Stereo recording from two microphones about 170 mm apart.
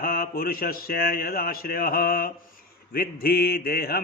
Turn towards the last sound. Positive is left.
turn(degrees=65)  # may be behind; listen again after turning